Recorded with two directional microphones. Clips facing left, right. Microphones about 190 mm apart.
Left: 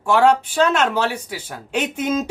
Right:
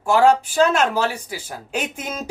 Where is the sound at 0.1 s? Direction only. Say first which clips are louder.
Even; 10° right (ahead or behind).